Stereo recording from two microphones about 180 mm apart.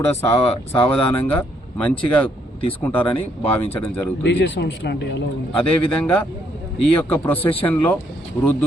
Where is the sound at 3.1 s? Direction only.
30° left (ahead or behind).